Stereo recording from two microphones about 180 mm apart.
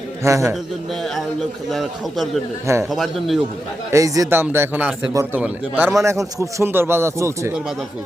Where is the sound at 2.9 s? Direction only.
Centre (ahead or behind).